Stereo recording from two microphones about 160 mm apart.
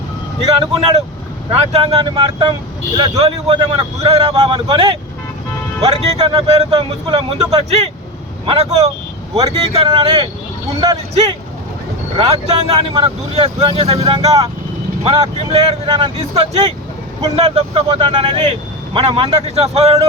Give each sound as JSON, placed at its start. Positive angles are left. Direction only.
{"t": 1.5, "sound": "speech", "side_deg": -40}